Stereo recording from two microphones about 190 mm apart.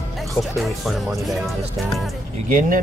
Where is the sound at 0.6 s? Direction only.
Centre (ahead or behind).